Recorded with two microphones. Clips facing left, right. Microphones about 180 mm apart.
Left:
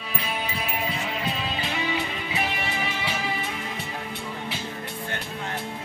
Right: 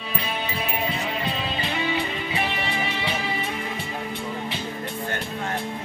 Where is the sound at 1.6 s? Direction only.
5° left (ahead or behind).